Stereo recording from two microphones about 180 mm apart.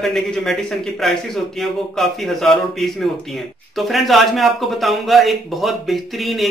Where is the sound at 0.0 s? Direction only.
Centre (ahead or behind).